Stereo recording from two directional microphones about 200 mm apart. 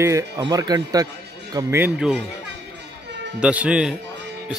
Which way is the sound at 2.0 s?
5° right (ahead or behind).